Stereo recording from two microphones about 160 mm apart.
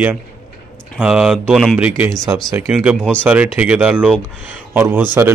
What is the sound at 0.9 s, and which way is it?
Speech, 5° right (ahead or behind).